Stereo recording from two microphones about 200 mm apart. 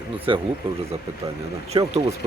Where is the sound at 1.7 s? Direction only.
25° right (ahead or behind).